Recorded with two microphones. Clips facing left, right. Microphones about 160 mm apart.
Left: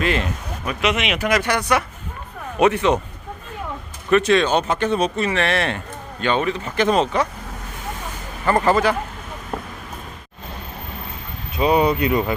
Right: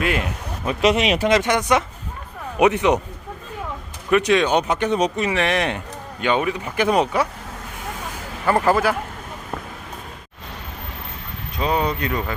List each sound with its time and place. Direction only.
0.0 s speech: 10° right (ahead or behind)
0.6 s speech: 30° right (ahead or behind)
4.1 s speech: 15° right (ahead or behind)
8.4 s speech: 5° right (ahead or behind)
11.5 s speech: 10° left (ahead or behind)